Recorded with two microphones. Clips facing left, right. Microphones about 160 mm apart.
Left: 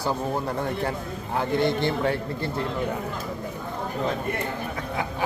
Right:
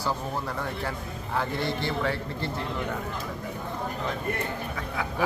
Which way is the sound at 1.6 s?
20° left (ahead or behind).